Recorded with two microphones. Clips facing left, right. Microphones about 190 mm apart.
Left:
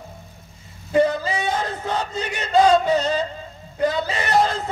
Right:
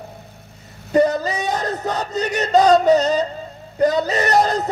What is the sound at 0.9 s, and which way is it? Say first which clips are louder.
Speech: right 2 dB; 40° right (ahead or behind).